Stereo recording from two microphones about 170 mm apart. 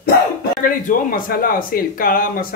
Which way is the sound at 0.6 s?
55° left (ahead or behind).